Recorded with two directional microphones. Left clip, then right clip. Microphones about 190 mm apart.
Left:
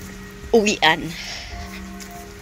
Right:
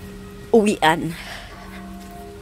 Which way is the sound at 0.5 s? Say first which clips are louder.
Even; 30° right (ahead or behind).